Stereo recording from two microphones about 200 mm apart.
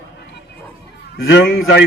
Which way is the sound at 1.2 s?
75° left (ahead or behind).